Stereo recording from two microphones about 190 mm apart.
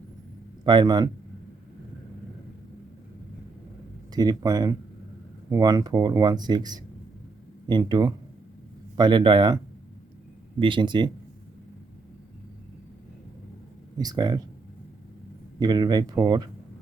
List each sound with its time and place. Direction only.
0.6 s speech: 25° right (ahead or behind)
4.1 s speech: 20° right (ahead or behind)
10.6 s speech: 25° right (ahead or behind)
14.0 s speech: 20° right (ahead or behind)
15.5 s speech: 20° right (ahead or behind)